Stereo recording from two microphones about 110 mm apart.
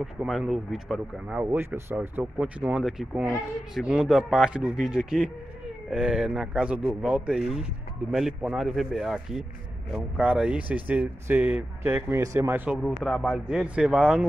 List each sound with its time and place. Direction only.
0.0 s speech: 5° right (ahead or behind)
1.4 s speech: 15° right (ahead or behind)
2.8 s speech: centre (ahead or behind); by 12.6 s 20° right (ahead or behind)
12.8 s speech: 5° left (ahead or behind)